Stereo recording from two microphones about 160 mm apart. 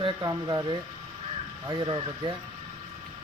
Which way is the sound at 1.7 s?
25° right (ahead or behind).